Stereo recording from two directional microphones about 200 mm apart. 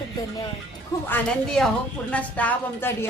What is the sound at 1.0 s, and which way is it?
A woman's voice, 5° left (ahead or behind).